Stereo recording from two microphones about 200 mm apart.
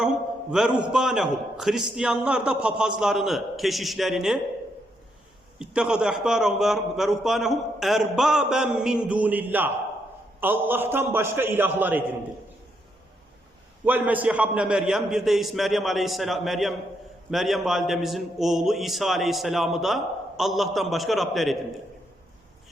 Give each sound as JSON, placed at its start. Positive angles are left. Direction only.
{"t": 0.5, "sound": "a man's voice", "side_deg": 0}
{"t": 5.5, "sound": "a man's voice", "side_deg": -5}
{"t": 13.8, "sound": "a man's voice", "side_deg": -10}